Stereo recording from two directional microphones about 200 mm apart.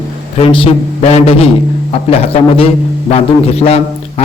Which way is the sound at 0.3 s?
25° left (ahead or behind).